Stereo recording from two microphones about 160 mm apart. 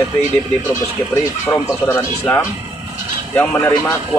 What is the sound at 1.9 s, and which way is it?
Speech, 15° left (ahead or behind).